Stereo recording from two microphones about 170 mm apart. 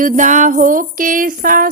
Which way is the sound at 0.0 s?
50° right (ahead or behind).